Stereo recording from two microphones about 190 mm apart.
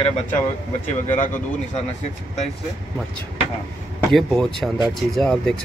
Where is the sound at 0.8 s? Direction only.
40° left (ahead or behind).